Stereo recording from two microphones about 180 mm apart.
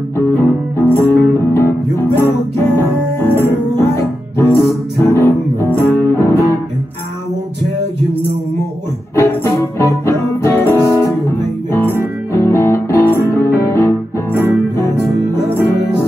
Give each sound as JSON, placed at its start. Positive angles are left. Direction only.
{"t": 0.3, "sound": "music", "side_deg": 10}
{"t": 9.1, "sound": "music", "side_deg": 15}